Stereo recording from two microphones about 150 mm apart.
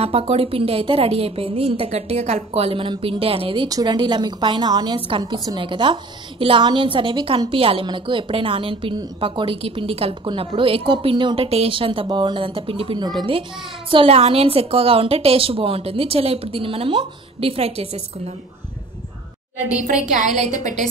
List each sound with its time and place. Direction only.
0.0 s a woman's voice: 40° right (ahead or behind)
3.6 s a woman's voice: 25° right (ahead or behind); by 18.3 s 45° right (ahead or behind)
20.2 s a woman's voice: 50° right (ahead or behind)